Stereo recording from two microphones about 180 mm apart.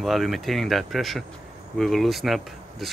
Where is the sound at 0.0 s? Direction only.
Centre (ahead or behind).